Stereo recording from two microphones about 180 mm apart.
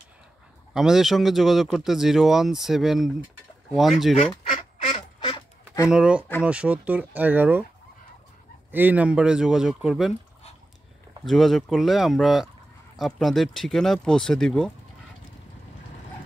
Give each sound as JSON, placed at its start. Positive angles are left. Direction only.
{"t": 0.7, "sound": "speech", "side_deg": 0}
{"t": 4.8, "sound": "duck", "side_deg": 30}
{"t": 5.9, "sound": "speech", "side_deg": -5}
{"t": 8.7, "sound": "speech", "side_deg": -10}
{"t": 11.2, "sound": "speech", "side_deg": 0}